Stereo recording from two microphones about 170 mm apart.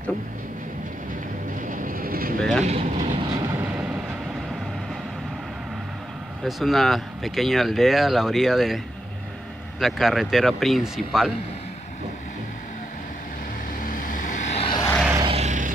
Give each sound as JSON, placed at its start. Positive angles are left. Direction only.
{"t": 1.6, "sound": "train", "side_deg": -55}
{"t": 2.6, "sound": "speech", "side_deg": -40}
{"t": 3.2, "sound": "vehicle", "side_deg": -30}
{"t": 3.5, "sound": "vehicle", "side_deg": -10}
{"t": 6.4, "sound": "speech", "side_deg": 0}
{"t": 13.8, "sound": "vehicle", "side_deg": 50}
{"t": 14.6, "sound": "vehicle", "side_deg": 30}
{"t": 15.1, "sound": "vehicle", "side_deg": -35}